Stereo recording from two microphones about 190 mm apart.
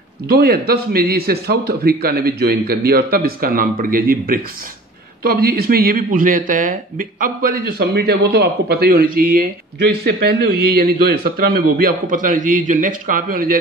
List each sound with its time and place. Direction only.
0.3 s a man's voice: 55° right (ahead or behind)